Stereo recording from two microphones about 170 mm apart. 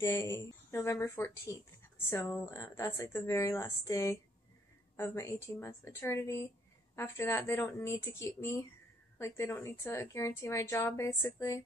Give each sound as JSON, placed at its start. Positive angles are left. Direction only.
{"t": 0.0, "sound": "speech", "side_deg": 15}